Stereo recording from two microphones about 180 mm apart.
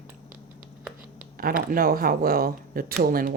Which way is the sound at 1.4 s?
55° right (ahead or behind).